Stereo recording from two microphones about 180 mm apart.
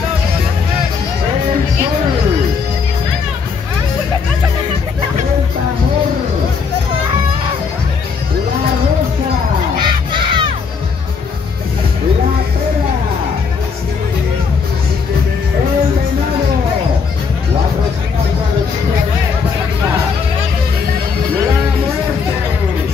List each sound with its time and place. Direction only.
9.8 s crowd: 25° right (ahead or behind)